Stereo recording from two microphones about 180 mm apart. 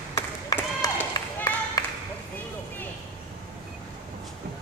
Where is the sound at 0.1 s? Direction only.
20° left (ahead or behind).